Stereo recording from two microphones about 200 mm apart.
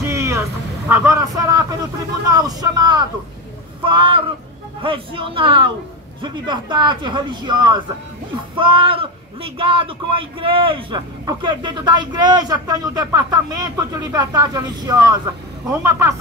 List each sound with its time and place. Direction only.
0.1 s a man's voice: 15° right (ahead or behind)